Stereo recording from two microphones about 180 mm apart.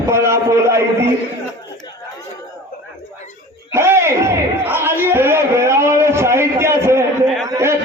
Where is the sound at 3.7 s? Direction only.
15° right (ahead or behind).